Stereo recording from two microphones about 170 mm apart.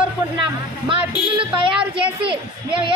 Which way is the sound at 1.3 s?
30° right (ahead or behind).